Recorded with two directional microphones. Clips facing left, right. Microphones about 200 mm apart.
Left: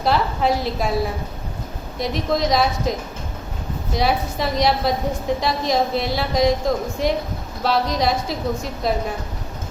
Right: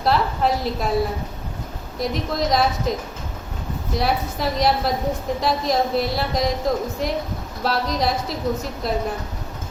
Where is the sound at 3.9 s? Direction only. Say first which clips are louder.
Left 2 dB; centre (ahead or behind).